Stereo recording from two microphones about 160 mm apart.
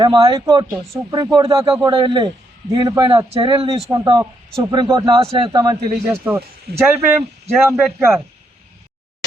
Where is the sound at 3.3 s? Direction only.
35° right (ahead or behind).